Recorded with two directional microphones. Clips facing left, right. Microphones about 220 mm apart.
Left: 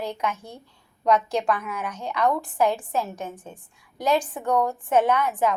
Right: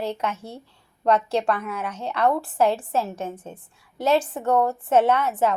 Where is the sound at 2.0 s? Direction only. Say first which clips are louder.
Right 2 dB; 35° right (ahead or behind).